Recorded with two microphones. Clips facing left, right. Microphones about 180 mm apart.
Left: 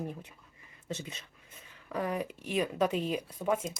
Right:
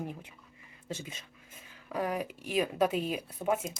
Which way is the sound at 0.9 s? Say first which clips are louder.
Left 1 dB; 10° right (ahead or behind).